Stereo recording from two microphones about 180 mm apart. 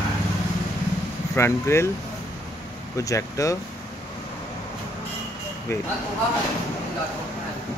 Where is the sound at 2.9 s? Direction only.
15° left (ahead or behind).